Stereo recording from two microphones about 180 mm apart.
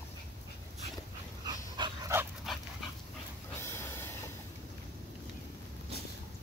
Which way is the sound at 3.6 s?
15° left (ahead or behind).